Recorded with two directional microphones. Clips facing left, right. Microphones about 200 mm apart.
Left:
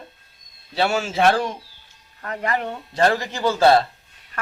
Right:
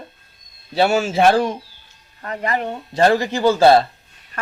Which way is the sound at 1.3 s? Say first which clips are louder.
Right 3 dB; 40° right (ahead or behind).